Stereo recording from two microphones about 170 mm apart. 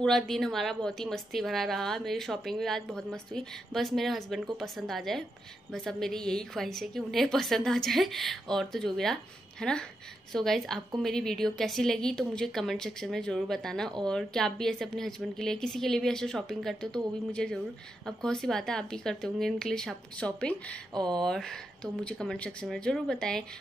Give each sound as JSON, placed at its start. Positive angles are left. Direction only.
{"t": 0.0, "sound": "a woman's voice", "side_deg": 0}
{"t": 20.9, "sound": "speech", "side_deg": -25}
{"t": 21.2, "sound": "a woman's voice", "side_deg": 5}